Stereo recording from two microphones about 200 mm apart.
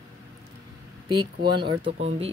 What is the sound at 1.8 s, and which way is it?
Speech, 65° right (ahead or behind).